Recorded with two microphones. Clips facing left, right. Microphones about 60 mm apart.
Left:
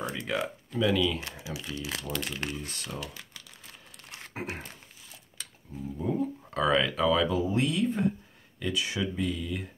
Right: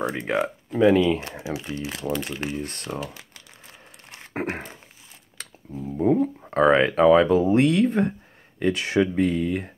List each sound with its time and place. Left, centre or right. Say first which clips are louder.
0.1 s speech: right 7 dB; right; by 2.5 s centre
2.5 s speech: right 7 dB; right
4.3 s a sound: right 9 dB; right
5.4 s a sound: right 5 dB; right
5.9 s speech: right 10 dB; right
8.5 s speech: right 10 dB; right